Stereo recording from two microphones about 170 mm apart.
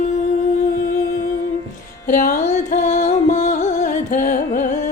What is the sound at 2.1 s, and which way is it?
Music, 50° left (ahead or behind).